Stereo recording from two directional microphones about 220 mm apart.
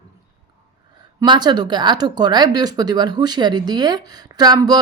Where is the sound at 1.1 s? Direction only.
20° right (ahead or behind).